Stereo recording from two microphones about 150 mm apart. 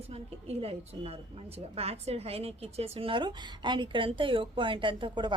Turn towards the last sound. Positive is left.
turn(degrees=-30)  # may be behind; listen again after turning